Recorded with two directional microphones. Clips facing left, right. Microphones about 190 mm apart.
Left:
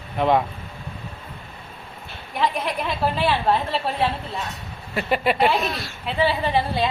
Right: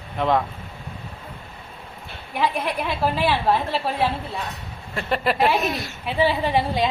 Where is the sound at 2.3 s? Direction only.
10° right (ahead or behind).